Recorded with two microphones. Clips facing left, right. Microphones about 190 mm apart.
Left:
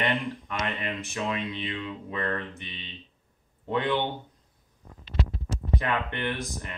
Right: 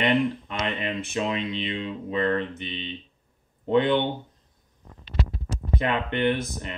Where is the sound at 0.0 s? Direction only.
20° right (ahead or behind).